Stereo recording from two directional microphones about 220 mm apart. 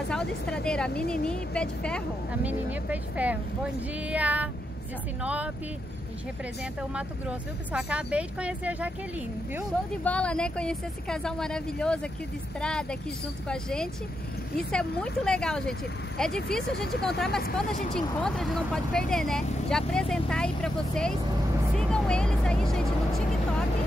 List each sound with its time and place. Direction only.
0.1 s speech: 5° left (ahead or behind)
2.4 s speech: 5° right (ahead or behind)
6.8 s speech: 5° right (ahead or behind)
10.0 s speech: 5° left (ahead or behind)
17.3 s speech: 45° left (ahead or behind)
17.6 s speech: 5° left (ahead or behind)